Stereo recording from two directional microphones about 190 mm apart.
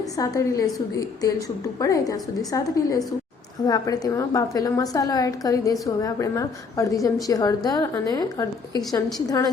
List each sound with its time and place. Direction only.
0.0 s a woman's voice: 15° left (ahead or behind)